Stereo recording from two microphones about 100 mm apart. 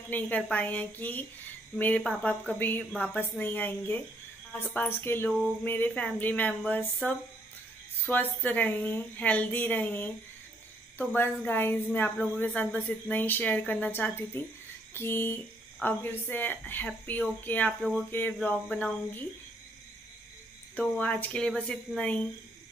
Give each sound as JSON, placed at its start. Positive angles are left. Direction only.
{"t": 0.1, "sound": "a woman's voice", "side_deg": 15}
{"t": 5.3, "sound": "a woman's voice", "side_deg": 10}
{"t": 11.1, "sound": "a woman's voice", "side_deg": 20}
{"t": 20.8, "sound": "a woman's voice", "side_deg": 15}